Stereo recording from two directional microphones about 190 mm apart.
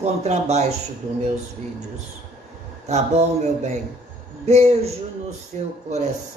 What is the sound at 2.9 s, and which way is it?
Speech, 35° right (ahead or behind).